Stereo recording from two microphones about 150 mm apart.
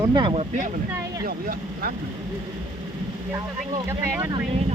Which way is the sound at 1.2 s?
75° right (ahead or behind).